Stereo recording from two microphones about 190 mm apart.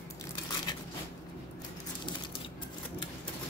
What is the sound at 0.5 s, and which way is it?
Crushing, 20° left (ahead or behind).